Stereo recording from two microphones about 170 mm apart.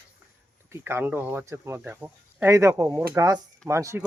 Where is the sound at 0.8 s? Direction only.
10° right (ahead or behind).